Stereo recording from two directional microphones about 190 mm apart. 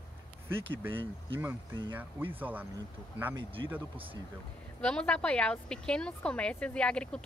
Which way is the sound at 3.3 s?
25° right (ahead or behind).